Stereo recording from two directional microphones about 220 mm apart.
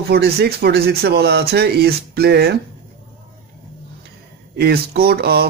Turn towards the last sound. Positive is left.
turn(degrees=-45)  # may be behind; listen again after turning